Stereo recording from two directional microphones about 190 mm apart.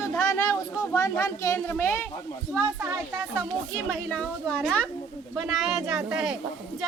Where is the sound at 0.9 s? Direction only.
15° left (ahead or behind).